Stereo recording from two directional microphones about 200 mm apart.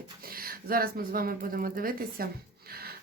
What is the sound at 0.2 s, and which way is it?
Speech, 50° right (ahead or behind).